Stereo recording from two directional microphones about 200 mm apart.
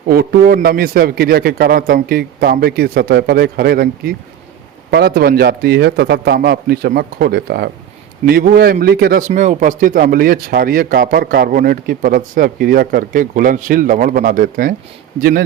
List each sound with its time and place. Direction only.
0.1 s speech: 50° right (ahead or behind)